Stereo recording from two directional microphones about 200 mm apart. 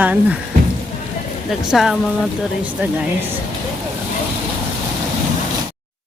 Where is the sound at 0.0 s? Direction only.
10° right (ahead or behind).